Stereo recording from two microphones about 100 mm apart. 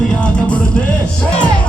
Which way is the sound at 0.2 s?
10° left (ahead or behind).